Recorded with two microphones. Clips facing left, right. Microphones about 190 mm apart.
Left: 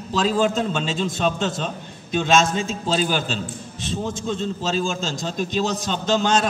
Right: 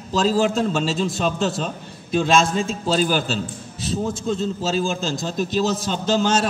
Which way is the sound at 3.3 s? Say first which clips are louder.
Right 2 dB; 5° right (ahead or behind).